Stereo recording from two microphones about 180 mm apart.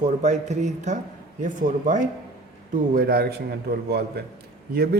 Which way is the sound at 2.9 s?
55° right (ahead or behind).